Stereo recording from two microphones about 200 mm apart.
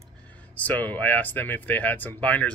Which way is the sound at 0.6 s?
10° left (ahead or behind).